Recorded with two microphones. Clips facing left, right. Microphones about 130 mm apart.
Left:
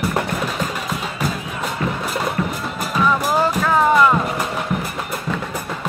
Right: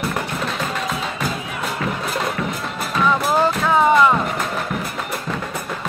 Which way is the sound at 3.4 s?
Centre (ahead or behind).